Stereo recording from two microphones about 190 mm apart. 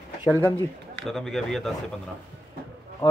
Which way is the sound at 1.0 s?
Centre (ahead or behind).